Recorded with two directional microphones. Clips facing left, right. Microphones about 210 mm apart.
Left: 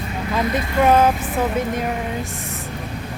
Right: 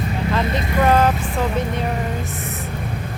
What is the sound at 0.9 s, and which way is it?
Speech, 5° left (ahead or behind).